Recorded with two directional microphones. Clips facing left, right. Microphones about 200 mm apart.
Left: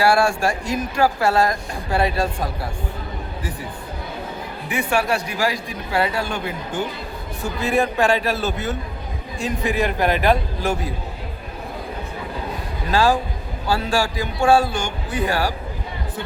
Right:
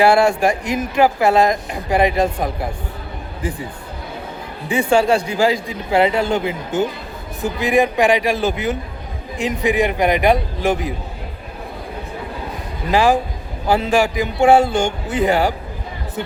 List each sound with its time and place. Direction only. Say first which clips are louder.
0.0 s speech: right 4 dB; 20° right (ahead or behind)
4.7 s a man's voice: right 6 dB; 30° right (ahead or behind)
12.9 s a man's voice: right 3 dB; 15° right (ahead or behind)